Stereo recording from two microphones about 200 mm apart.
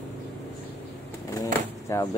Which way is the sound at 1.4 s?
15° left (ahead or behind).